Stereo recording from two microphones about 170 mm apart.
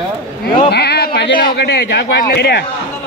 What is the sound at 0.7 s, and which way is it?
A man's voice, 75° left (ahead or behind).